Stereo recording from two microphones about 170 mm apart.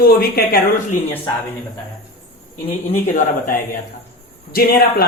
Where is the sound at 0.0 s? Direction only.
60° left (ahead or behind).